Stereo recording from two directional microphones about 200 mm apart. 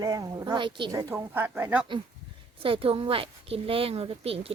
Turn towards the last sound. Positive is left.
turn(degrees=-30)  # may be behind; listen again after turning